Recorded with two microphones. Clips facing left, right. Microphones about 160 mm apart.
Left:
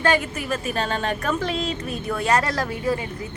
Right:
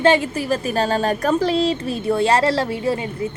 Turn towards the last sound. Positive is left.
turn(degrees=-25)  # may be behind; listen again after turning